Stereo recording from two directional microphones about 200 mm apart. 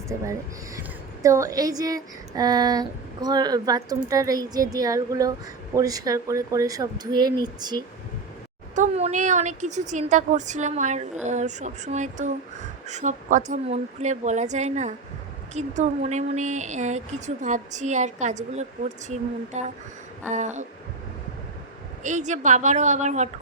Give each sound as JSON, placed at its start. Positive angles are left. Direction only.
{"t": 0.1, "sound": "speech", "side_deg": -15}
{"t": 8.7, "sound": "a woman's voice", "side_deg": -35}
{"t": 22.0, "sound": "a woman's voice", "side_deg": -35}